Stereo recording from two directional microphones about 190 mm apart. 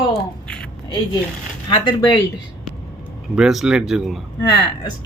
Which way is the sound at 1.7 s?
25° left (ahead or behind).